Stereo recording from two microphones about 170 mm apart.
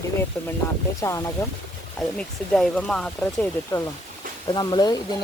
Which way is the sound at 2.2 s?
5° left (ahead or behind).